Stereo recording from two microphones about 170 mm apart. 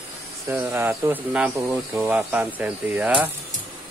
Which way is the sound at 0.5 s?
10° right (ahead or behind).